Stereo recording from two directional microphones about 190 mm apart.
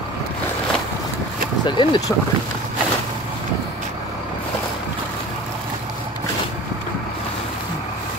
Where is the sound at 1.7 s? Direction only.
20° left (ahead or behind).